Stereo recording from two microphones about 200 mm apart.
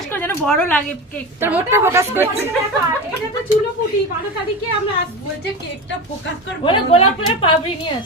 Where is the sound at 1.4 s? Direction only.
10° right (ahead or behind).